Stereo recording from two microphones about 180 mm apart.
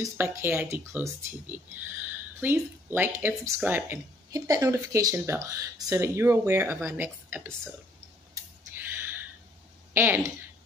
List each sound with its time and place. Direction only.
0.2 s speech: 10° right (ahead or behind)
8.7 s a sound: 10° right (ahead or behind)
9.9 s speech: 10° right (ahead or behind)